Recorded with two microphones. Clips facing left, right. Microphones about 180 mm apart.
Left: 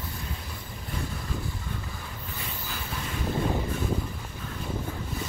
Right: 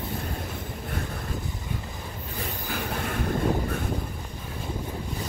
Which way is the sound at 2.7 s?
60° right (ahead or behind).